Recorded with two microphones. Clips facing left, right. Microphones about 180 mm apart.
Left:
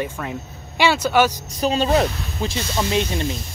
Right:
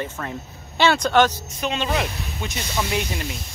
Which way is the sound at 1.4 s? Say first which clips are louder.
Left 5 dB; 35° left (ahead or behind).